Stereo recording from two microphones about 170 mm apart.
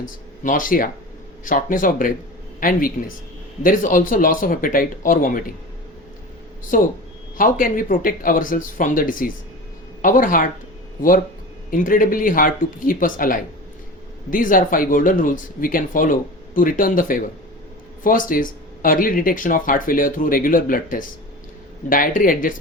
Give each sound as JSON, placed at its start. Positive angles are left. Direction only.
{"t": 0.4, "sound": "speech", "side_deg": 55}
{"t": 6.7, "sound": "speech", "side_deg": 50}
{"t": 11.7, "sound": "speech", "side_deg": 55}